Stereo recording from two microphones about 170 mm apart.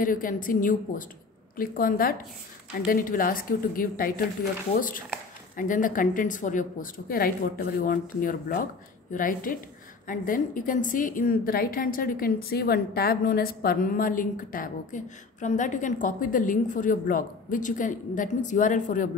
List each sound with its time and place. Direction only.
0.0 s a woman's voice: 55° left (ahead or behind)